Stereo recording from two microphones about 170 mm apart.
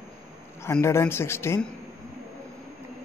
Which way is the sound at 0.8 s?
15° left (ahead or behind).